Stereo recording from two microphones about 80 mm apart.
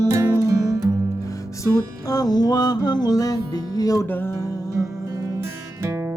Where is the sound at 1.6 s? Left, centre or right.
Left.